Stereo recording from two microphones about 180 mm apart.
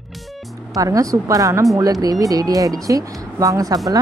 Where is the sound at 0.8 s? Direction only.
20° right (ahead or behind).